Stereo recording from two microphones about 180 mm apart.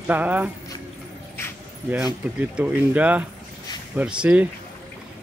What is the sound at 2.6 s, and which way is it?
Speech, 10° right (ahead or behind).